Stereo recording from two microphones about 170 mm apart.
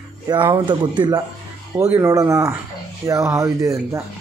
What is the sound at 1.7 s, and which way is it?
Speech, 10° right (ahead or behind).